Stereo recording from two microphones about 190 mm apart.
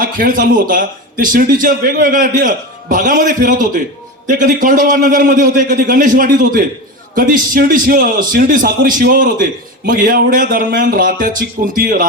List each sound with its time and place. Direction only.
0.0 s a man's voice: 45° right (ahead or behind)